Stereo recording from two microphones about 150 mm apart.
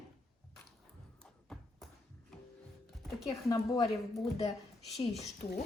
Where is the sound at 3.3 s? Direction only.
20° left (ahead or behind).